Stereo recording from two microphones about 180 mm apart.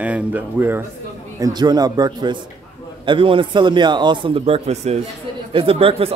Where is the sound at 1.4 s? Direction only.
20° right (ahead or behind).